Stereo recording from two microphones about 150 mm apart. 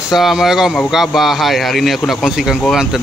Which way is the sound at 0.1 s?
Centre (ahead or behind).